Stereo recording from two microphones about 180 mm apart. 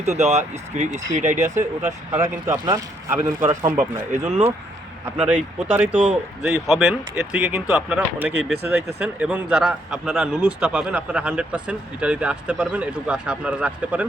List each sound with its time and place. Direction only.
0.0 s speech: 40° right (ahead or behind)
1.5 s speech: 15° right (ahead or behind)
3.8 s speech: 40° right (ahead or behind)
5.1 s a man's voice: 5° right (ahead or behind)